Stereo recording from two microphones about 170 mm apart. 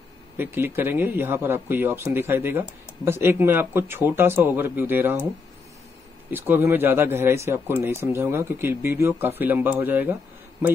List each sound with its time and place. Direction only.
0.4 s speech: 10° right (ahead or behind)
6.3 s speech: 10° right (ahead or behind)